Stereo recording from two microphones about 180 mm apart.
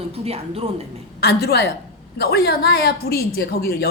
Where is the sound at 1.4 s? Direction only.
65° left (ahead or behind).